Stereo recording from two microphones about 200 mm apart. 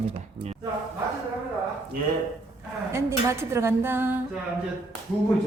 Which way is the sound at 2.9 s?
15° right (ahead or behind).